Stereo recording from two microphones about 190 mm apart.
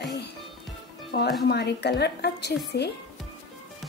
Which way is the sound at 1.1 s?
55° left (ahead or behind).